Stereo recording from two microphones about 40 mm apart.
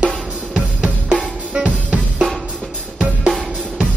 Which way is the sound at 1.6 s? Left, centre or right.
Right.